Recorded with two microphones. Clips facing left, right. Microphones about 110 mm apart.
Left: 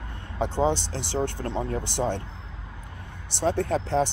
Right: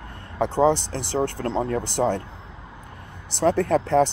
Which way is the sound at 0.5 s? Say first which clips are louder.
Right 5 dB; 50° right (ahead or behind).